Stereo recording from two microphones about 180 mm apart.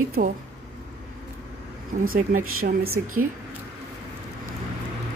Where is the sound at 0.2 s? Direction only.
50° right (ahead or behind).